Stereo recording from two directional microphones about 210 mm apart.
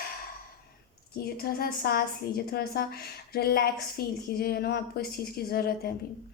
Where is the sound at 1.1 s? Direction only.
45° left (ahead or behind).